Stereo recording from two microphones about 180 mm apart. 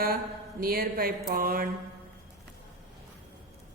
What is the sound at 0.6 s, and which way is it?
A woman's voice, 55° right (ahead or behind).